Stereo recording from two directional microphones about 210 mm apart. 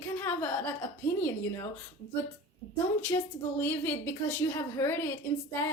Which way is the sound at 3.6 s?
10° left (ahead or behind).